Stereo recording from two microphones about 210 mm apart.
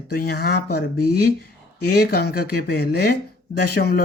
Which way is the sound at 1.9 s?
45° left (ahead or behind).